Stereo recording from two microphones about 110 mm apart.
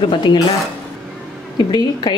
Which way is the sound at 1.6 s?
40° left (ahead or behind).